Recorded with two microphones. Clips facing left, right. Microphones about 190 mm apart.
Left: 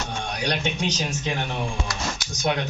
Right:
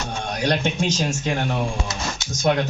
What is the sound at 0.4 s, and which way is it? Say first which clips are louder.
Speech: right 5 dB; 45° right (ahead or behind).